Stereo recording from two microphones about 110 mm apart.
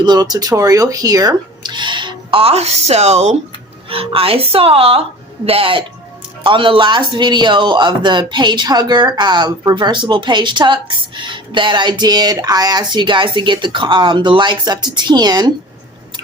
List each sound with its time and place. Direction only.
0.0 s speech: 40° right (ahead or behind); by 3.3 s 80° right
3.8 s a man's voice: 60° right (ahead or behind); by 15.5 s 35° right (ahead or behind)